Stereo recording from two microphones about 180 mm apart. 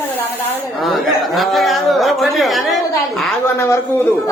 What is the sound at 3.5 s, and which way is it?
Speech, 15° left (ahead or behind).